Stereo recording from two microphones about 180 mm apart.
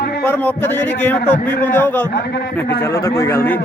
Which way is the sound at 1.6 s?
10° left (ahead or behind).